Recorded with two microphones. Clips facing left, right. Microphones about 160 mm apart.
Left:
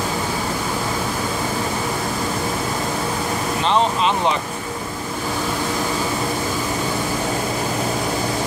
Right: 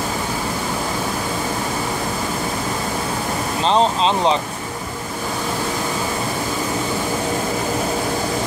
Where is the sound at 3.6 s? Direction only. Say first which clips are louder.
Right 2 dB; 30° right (ahead or behind).